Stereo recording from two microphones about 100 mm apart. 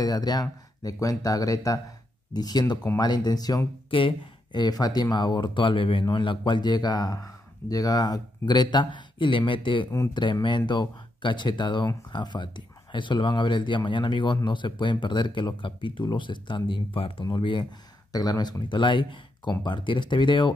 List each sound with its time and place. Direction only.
0.0 s speech: 40° left (ahead or behind)
3.9 s speech: 60° left (ahead or behind)
18.1 s speech: 40° left (ahead or behind)